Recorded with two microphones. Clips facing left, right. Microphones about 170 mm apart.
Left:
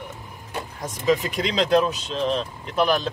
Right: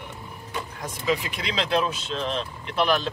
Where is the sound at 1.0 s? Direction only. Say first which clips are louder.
Left 5 dB; 45° left (ahead or behind).